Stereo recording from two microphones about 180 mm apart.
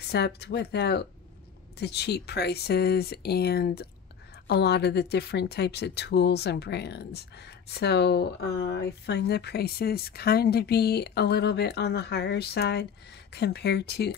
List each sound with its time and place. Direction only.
0.1 s speech: 65° left (ahead or behind)